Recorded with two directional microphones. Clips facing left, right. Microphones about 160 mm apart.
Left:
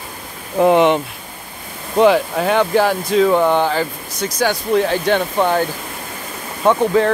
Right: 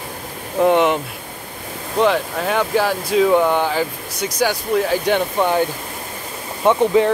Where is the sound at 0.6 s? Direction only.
Centre (ahead or behind).